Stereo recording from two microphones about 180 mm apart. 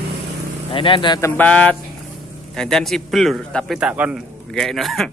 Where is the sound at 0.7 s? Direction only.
30° left (ahead or behind).